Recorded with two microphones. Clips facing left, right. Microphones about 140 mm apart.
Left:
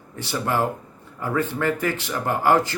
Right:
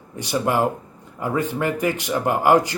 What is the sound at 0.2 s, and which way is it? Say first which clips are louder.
Speech: right 3 dB; 15° right (ahead or behind).